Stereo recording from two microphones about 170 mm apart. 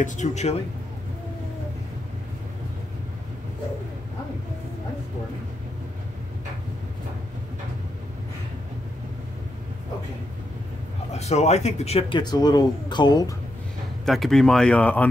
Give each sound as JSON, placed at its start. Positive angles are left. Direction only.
{"t": 0.0, "sound": "speech", "side_deg": 45}
{"t": 11.1, "sound": "speech", "side_deg": 40}
{"t": 14.0, "sound": "speech", "side_deg": 0}